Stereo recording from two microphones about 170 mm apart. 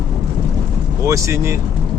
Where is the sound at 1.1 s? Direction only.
15° right (ahead or behind).